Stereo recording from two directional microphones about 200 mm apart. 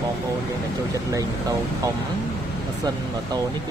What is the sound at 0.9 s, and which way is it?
Speech, 15° right (ahead or behind).